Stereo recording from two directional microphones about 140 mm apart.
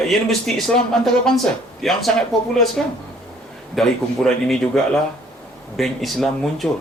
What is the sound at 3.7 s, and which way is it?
Speech, centre (ahead or behind).